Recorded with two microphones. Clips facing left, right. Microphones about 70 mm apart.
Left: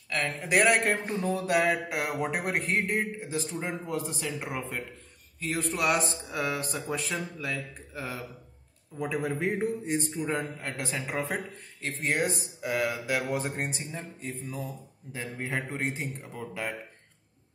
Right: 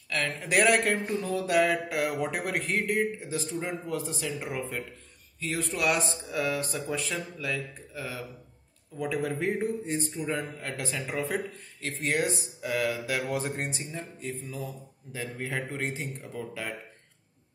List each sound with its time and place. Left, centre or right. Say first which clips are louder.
0.1 s speech: even; left